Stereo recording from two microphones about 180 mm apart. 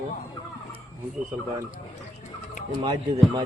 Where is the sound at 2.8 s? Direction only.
30° right (ahead or behind).